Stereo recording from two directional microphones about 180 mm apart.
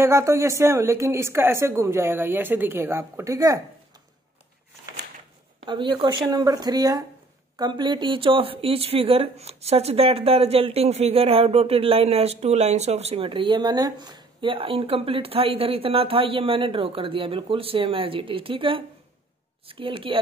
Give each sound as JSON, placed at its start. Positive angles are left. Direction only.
{"t": 0.0, "sound": "a woman's voice", "side_deg": -15}
{"t": 5.7, "sound": "a woman's voice", "side_deg": -25}